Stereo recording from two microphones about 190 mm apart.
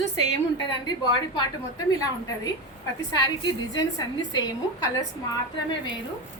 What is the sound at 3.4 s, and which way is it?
A woman's voice, 20° left (ahead or behind).